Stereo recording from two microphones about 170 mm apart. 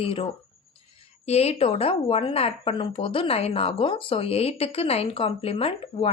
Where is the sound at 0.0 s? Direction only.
35° left (ahead or behind).